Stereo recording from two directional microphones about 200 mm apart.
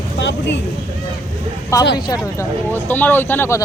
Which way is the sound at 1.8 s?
60° left (ahead or behind).